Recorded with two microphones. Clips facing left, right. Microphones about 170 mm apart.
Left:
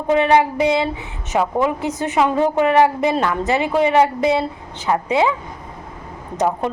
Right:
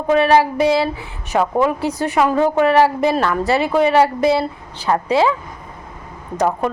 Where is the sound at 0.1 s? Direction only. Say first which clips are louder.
Right 1 dB; 20° left (ahead or behind).